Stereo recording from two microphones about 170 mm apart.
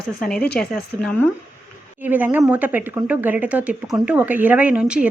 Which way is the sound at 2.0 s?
10° right (ahead or behind).